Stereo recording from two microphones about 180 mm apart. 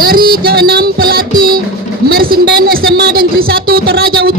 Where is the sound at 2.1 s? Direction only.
55° right (ahead or behind).